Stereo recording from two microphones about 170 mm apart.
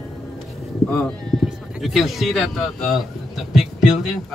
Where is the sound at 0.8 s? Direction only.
Centre (ahead or behind).